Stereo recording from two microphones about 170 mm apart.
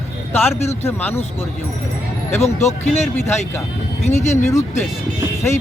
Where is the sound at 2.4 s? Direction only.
40° left (ahead or behind).